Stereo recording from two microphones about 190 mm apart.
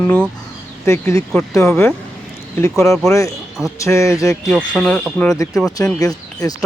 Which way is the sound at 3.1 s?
15° left (ahead or behind).